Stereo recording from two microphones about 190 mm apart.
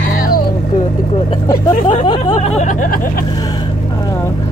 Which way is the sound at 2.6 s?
45° left (ahead or behind).